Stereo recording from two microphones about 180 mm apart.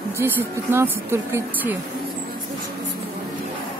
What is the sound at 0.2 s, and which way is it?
Speech, 15° right (ahead or behind).